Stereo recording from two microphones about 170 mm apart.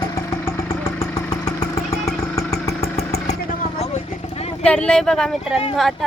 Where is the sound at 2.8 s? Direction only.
65° left (ahead or behind).